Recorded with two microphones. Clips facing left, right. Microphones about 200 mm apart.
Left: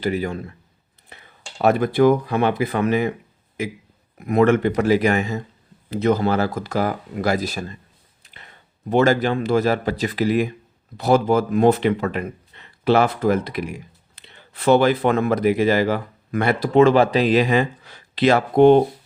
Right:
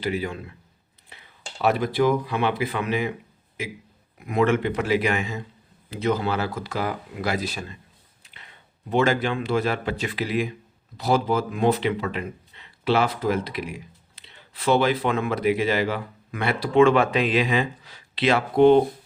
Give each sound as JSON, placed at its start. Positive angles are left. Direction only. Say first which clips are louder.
{"t": 0.0, "sound": "speech", "louder": "left 4 dB", "side_deg": 45}
{"t": 1.5, "sound": "speech", "louder": "left 5 dB", "side_deg": 50}
{"t": 4.3, "sound": "speech", "louder": "left 5 dB", "side_deg": 45}
{"t": 8.2, "sound": "a sound", "louder": "left 3 dB", "side_deg": 45}
{"t": 8.9, "sound": "speech", "louder": "left 5 dB", "side_deg": 40}
{"t": 10.9, "sound": "speech", "louder": "left 5 dB", "side_deg": 55}